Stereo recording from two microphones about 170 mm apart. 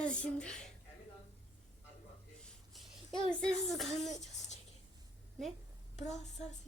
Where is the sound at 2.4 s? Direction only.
Centre (ahead or behind).